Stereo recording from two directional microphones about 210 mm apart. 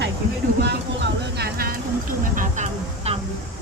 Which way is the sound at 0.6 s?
55° right (ahead or behind).